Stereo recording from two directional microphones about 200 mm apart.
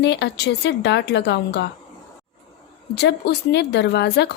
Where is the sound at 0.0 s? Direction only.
60° left (ahead or behind).